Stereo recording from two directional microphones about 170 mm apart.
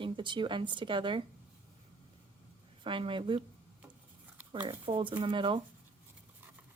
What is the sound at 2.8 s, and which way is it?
Speech, 30° right (ahead or behind).